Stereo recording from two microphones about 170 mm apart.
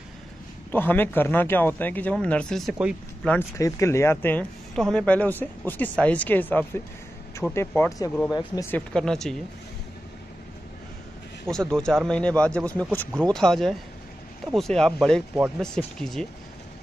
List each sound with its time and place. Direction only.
0.7 s speech: 10° left (ahead or behind)
3.3 s speech: 20° left (ahead or behind)
8.3 s speech: 20° left (ahead or behind)
8.7 s speech: 5° left (ahead or behind)
11.7 s speech: 5° left (ahead or behind)